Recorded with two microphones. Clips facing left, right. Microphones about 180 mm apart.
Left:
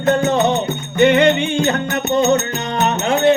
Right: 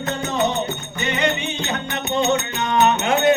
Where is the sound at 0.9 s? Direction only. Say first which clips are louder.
Left 11 dB; 65° left (ahead or behind); by 3.3 s 35° left (ahead or behind).